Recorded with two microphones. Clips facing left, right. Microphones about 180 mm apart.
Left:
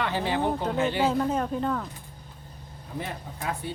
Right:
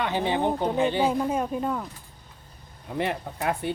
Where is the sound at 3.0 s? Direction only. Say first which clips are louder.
Right 8 dB; 70° right (ahead or behind).